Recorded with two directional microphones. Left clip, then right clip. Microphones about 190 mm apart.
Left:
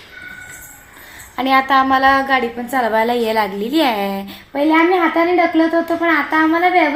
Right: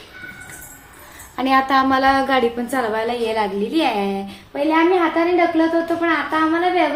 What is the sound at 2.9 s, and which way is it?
A woman's voice, 40° left (ahead or behind).